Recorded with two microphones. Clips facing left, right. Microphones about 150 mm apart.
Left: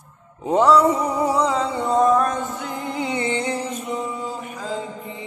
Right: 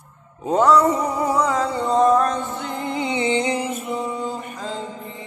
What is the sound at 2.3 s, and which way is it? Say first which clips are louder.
Music: even; 45° left (ahead or behind).